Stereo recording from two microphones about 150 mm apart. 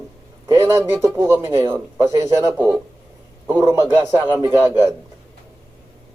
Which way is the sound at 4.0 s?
20° right (ahead or behind).